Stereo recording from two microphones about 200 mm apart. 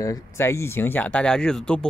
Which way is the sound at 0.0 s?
15° left (ahead or behind).